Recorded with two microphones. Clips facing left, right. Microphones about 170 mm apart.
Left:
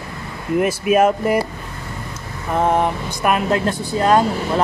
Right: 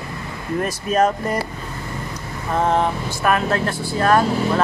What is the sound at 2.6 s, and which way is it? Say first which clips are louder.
Speech: left 2 dB; 15° left (ahead or behind).